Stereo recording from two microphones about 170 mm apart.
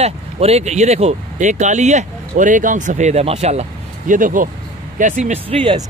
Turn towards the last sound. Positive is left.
turn(degrees=-30)  # may be behind; listen again after turning